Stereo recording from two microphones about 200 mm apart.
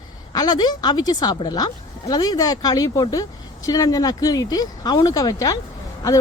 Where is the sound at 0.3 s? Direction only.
20° left (ahead or behind).